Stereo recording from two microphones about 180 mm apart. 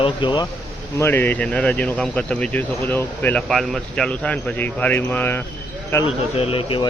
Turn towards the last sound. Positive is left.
turn(degrees=30)  # may be behind; listen again after turning